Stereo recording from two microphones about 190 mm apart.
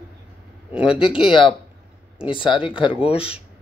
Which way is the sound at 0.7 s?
5° right (ahead or behind).